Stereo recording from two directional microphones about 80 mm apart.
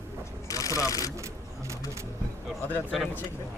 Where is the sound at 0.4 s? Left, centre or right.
Left.